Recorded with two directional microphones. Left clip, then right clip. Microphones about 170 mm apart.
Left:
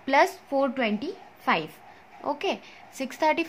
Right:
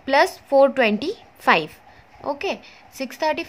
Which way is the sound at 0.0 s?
10° right (ahead or behind).